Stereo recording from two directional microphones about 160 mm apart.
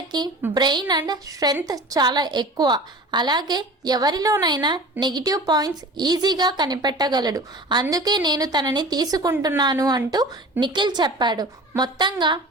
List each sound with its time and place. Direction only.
0.5 s a woman's voice: 25° right (ahead or behind)